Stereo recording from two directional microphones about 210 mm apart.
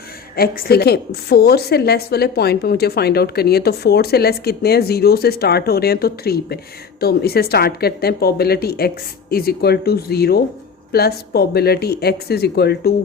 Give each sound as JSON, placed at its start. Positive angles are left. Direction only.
{"t": 0.3, "sound": "a woman's voice", "side_deg": 45}